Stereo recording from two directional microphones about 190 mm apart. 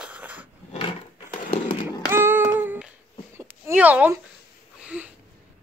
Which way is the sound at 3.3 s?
10° right (ahead or behind).